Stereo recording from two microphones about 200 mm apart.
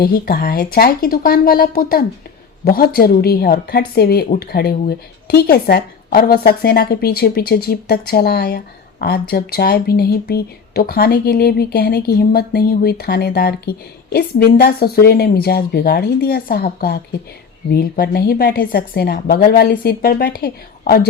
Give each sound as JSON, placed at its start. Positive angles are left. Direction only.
{"t": 0.0, "sound": "a woman's voice", "side_deg": 50}